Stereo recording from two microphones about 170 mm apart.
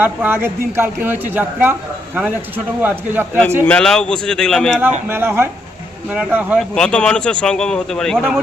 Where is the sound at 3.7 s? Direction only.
5° left (ahead or behind).